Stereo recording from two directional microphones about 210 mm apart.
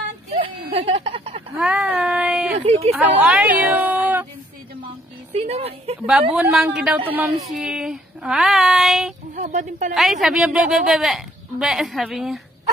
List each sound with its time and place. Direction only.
0.3 s a sound: 25° right (ahead or behind)
1.6 s a sound: 5° right (ahead or behind)
2.6 s a woman's voice: 30° right (ahead or behind)
2.9 s speech: 10° right (ahead or behind)
5.3 s a woman's voice: 30° right (ahead or behind)
6.3 s speech: 5° right (ahead or behind)
9.3 s speech: 40° right (ahead or behind)
10.2 s speech: 5° right (ahead or behind)